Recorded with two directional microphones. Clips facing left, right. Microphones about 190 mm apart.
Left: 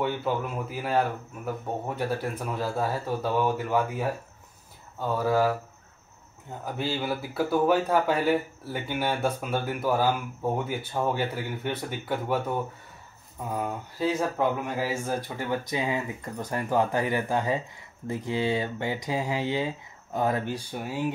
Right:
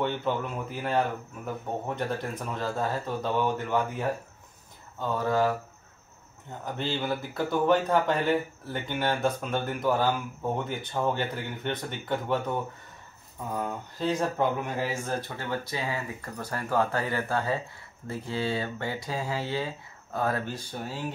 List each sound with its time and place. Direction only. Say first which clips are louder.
0.0 s speech: left 1 dB; 5° left (ahead or behind)
6.6 s speech: left 1 dB; 10° left (ahead or behind)
13.6 s speech: left 2 dB; 10° left (ahead or behind)